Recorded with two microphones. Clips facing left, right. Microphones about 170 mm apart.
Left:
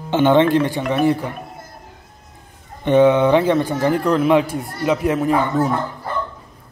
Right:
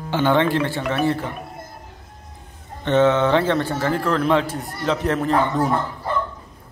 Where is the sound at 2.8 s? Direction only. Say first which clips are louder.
Left 4 dB; 15° left (ahead or behind).